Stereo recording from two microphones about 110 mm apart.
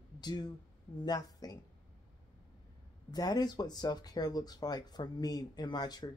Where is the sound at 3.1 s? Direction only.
35° left (ahead or behind).